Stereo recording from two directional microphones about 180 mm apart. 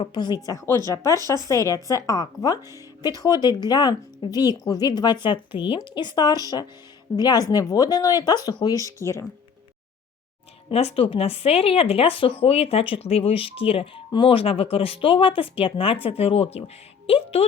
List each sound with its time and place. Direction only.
0.0 s speech: 25° left (ahead or behind)
10.7 s speech: 35° left (ahead or behind)